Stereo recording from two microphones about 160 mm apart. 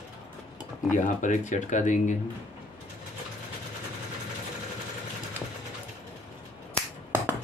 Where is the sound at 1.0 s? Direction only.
50° left (ahead or behind).